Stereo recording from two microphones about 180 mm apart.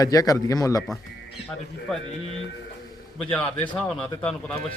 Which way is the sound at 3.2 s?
5° left (ahead or behind).